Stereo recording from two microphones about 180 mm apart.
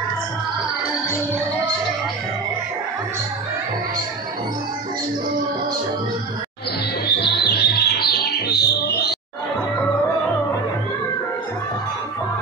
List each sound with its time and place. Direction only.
7.1 s music: 65° left (ahead or behind)